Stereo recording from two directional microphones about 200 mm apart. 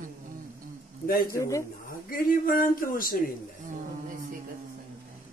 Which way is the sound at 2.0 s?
45° left (ahead or behind).